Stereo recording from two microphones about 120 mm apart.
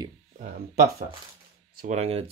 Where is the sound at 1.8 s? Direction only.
65° right (ahead or behind).